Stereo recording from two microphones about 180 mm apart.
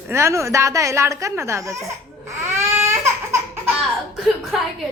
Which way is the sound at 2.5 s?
15° right (ahead or behind).